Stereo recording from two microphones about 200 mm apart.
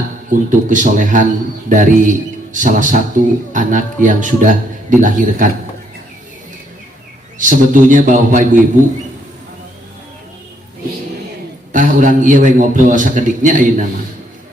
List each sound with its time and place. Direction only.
0.3 s a man's voice: 40° right (ahead or behind)
7.3 s a man's voice: 40° right (ahead or behind)
11.7 s a man's voice: 40° right (ahead or behind)